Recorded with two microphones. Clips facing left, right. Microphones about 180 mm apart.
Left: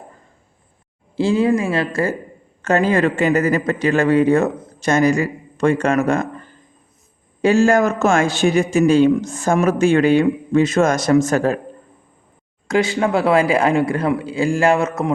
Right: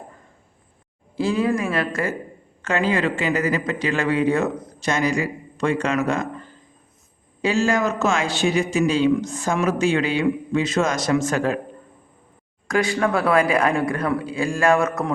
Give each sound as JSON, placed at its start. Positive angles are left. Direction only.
{"t": 1.1, "sound": "speech", "side_deg": 25}
{"t": 2.6, "sound": "a man's voice", "side_deg": 45}
{"t": 12.6, "sound": "speech", "side_deg": 25}